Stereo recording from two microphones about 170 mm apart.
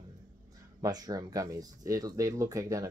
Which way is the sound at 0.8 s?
20° right (ahead or behind).